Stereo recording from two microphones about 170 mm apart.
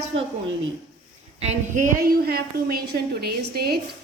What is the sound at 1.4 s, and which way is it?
Speech, 40° right (ahead or behind).